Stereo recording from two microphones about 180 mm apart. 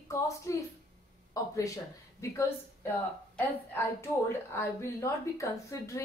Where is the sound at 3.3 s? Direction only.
15° left (ahead or behind).